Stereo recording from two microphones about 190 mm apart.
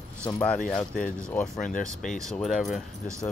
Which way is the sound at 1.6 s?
45° left (ahead or behind).